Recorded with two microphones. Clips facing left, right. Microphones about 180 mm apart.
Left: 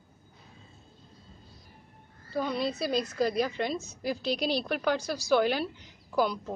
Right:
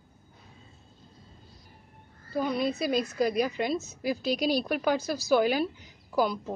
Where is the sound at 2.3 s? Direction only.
10° right (ahead or behind).